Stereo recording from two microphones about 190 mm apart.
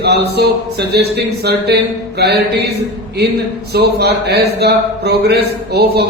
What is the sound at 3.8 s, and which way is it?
Speech, 60° right (ahead or behind).